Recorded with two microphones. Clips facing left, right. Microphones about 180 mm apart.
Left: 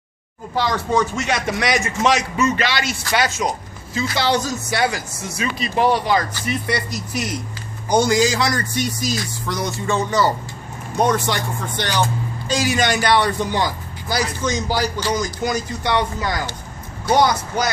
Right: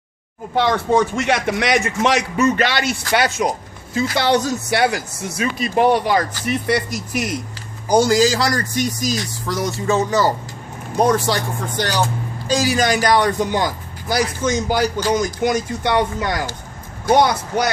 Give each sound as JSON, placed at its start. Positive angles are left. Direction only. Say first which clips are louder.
{"t": 0.6, "sound": "speech", "louder": "right 3 dB", "side_deg": -60}
{"t": 2.3, "sound": "speech", "louder": "right 3 dB", "side_deg": -45}
{"t": 7.9, "sound": "speech", "louder": "right 2 dB", "side_deg": -35}